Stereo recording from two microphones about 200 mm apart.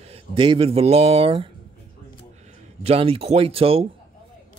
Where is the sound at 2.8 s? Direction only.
30° right (ahead or behind).